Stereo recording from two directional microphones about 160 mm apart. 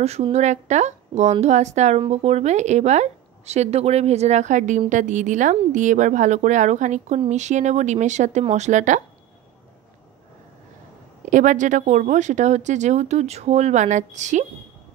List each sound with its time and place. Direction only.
0.0 s speech: 40° right (ahead or behind)
11.2 s speech: 50° right (ahead or behind)